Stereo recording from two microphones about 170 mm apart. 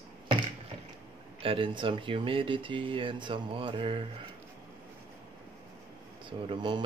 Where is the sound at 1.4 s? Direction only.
30° right (ahead or behind).